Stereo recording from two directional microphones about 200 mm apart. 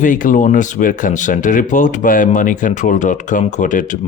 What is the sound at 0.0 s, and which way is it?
A man's voice, 40° left (ahead or behind).